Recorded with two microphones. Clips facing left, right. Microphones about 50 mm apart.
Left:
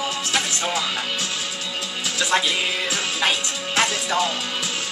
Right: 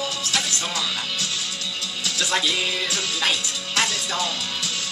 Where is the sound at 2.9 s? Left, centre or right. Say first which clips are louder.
Left 2 dB; left.